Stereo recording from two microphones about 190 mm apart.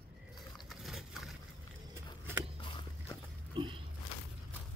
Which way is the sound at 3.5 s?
25° right (ahead or behind).